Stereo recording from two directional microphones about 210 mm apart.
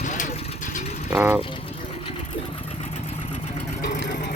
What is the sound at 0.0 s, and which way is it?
Vehicle, 35° left (ahead or behind).